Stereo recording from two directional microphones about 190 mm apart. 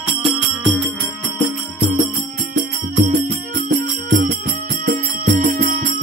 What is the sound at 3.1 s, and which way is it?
Music, 45° right (ahead or behind).